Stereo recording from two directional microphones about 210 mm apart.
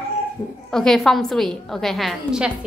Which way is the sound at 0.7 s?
Centre (ahead or behind).